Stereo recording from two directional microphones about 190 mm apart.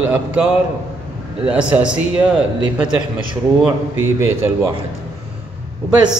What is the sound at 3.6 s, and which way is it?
Speech, 10° right (ahead or behind).